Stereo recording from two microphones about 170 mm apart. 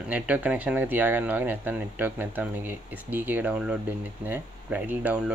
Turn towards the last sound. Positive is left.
turn(degrees=-5)  # may be behind; listen again after turning